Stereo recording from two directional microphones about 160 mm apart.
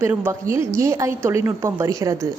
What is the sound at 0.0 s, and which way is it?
A woman's voice, 15° right (ahead or behind).